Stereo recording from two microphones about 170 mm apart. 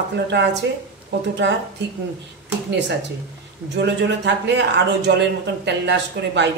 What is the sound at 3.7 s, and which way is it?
A man's voice, 85° right.